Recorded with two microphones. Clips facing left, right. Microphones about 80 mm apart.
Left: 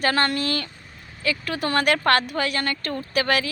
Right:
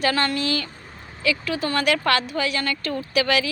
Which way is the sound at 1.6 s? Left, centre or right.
Left.